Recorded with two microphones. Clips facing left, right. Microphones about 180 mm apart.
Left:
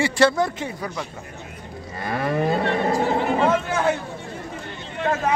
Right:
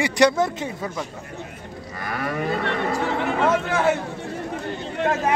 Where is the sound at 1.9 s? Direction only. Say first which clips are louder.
Left 4 dB; 25° left (ahead or behind).